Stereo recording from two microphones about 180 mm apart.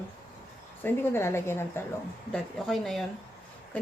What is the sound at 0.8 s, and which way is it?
Speech, 10° left (ahead or behind).